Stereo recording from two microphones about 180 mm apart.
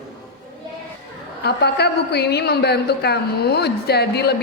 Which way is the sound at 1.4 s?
65° left (ahead or behind).